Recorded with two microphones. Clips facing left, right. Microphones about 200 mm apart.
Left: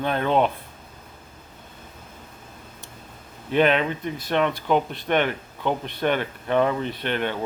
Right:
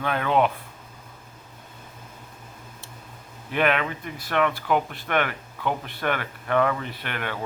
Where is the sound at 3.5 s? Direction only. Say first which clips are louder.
Left 4 dB; 25° left (ahead or behind).